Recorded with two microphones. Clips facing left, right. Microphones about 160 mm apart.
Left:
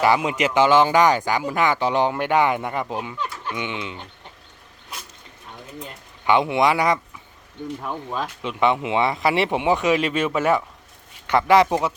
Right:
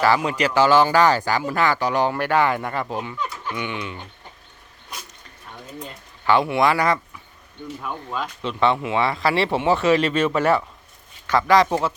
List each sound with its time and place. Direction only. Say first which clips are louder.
0.0 s speech: even; 20° left (ahead or behind)
6.2 s speech: even; 20° left (ahead or behind)
7.8 s speech: even; 35° left (ahead or behind)
8.4 s speech: even; 10° left (ahead or behind)
11.3 s a man's voice: left 1 dB; 20° left (ahead or behind)